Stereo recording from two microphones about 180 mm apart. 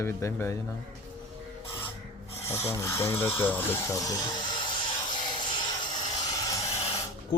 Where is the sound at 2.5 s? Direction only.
15° left (ahead or behind).